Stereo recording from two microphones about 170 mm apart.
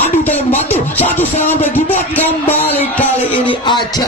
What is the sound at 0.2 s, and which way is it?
Music, 10° left (ahead or behind).